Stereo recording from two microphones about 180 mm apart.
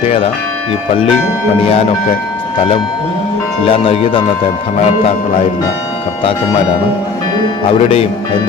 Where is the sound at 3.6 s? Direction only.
30° left (ahead or behind).